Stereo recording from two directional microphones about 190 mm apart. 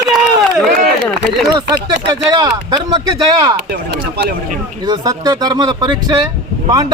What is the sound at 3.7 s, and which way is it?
Speech, 60° right (ahead or behind).